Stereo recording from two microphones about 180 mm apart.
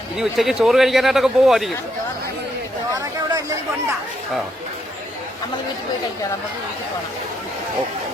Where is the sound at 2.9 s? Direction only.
20° right (ahead or behind).